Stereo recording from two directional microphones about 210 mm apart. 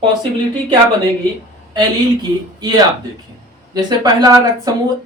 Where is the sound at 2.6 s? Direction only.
20° right (ahead or behind).